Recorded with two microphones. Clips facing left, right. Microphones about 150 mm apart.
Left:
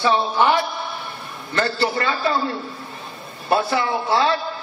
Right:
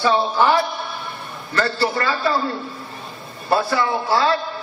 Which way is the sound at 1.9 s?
25° left (ahead or behind).